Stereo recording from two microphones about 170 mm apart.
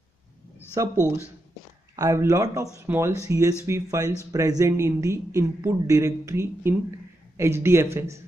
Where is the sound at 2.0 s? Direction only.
20° right (ahead or behind).